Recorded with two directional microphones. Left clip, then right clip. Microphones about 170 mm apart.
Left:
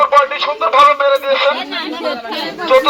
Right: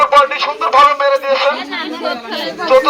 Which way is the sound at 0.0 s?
15° right (ahead or behind).